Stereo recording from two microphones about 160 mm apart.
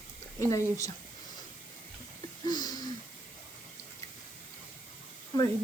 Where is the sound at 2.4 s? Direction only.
25° left (ahead or behind).